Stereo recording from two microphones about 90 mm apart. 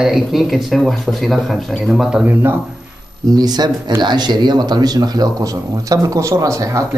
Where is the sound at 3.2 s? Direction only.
50° right (ahead or behind).